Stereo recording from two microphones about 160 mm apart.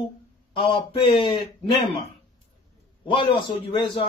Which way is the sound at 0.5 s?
35° left (ahead or behind).